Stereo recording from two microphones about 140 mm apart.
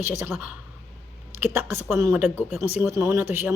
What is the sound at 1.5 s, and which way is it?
Speech, 15° right (ahead or behind).